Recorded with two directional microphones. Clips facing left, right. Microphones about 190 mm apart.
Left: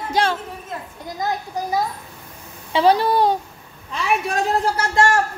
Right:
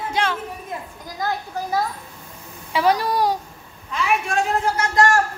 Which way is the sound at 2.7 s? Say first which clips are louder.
Left 3 dB; 30° left (ahead or behind).